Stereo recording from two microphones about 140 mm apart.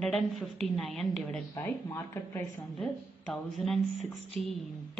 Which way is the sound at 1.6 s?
20° left (ahead or behind).